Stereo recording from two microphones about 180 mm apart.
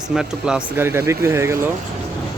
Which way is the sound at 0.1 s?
5° right (ahead or behind).